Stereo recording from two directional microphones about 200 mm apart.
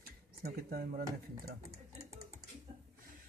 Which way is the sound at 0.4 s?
50° right (ahead or behind).